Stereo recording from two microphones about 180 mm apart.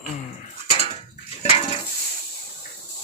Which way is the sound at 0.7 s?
35° left (ahead or behind).